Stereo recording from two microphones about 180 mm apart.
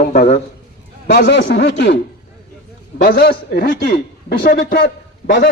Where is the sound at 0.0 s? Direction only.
55° left (ahead or behind).